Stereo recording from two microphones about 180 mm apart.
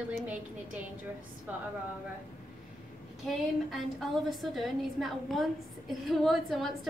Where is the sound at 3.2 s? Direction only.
Centre (ahead or behind).